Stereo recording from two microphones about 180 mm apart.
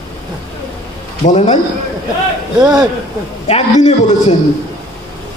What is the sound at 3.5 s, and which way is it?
Speech, 35° left (ahead or behind).